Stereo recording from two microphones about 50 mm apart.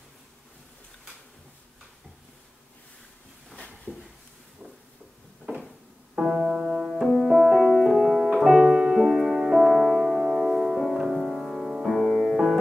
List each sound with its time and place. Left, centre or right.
3.5 s a sound: left
6.4 s music: centre
8.7 s music: centre